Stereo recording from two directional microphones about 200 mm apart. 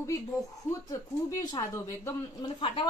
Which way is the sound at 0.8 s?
20° left (ahead or behind).